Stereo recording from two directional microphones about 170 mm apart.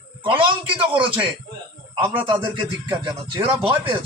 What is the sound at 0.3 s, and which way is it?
A man's voice, 30° right (ahead or behind).